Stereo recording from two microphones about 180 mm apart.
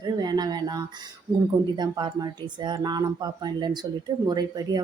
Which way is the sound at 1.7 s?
25° right (ahead or behind).